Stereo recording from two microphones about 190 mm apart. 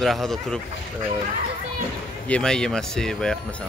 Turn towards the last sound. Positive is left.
turn(degrees=5)  # may be behind; listen again after turning